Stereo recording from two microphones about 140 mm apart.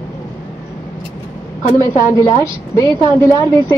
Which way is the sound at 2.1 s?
25° left (ahead or behind).